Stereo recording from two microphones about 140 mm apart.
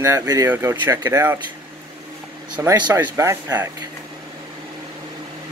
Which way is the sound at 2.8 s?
15° right (ahead or behind).